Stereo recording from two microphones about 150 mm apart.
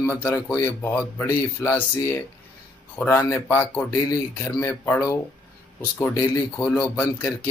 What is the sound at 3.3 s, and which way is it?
Music, 10° left (ahead or behind).